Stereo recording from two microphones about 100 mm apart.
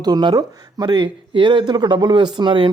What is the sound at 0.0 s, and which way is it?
Speech, 45° right (ahead or behind).